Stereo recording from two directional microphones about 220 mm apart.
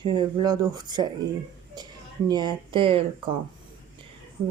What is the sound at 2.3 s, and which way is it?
Speech, 20° right (ahead or behind).